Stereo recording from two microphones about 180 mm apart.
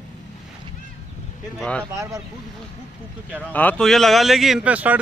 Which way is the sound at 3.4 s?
10° left (ahead or behind).